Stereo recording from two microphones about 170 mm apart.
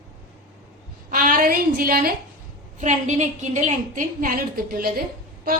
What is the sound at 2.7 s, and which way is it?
A woman's voice, 45° right (ahead or behind).